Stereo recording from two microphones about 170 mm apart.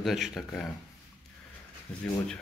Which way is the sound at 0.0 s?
Centre (ahead or behind).